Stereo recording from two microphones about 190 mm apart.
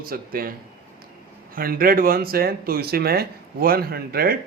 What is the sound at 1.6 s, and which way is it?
Speech, 50° right (ahead or behind).